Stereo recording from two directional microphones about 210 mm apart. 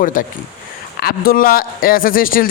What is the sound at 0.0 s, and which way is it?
A man's voice, 40° left (ahead or behind).